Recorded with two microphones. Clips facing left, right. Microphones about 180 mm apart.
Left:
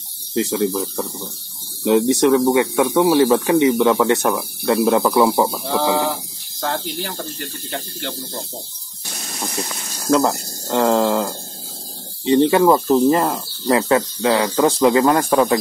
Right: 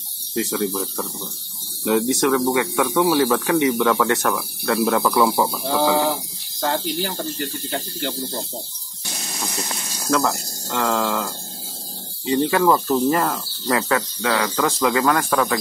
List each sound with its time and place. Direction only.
0.3 s speech: 25° left (ahead or behind)
5.7 s speech: centre (ahead or behind)
10.1 s speech: 30° left (ahead or behind)